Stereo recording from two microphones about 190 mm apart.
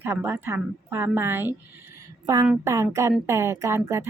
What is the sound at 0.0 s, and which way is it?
A woman's voice, 10° right (ahead or behind).